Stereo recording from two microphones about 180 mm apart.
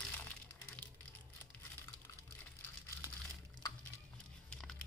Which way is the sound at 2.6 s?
20° left (ahead or behind).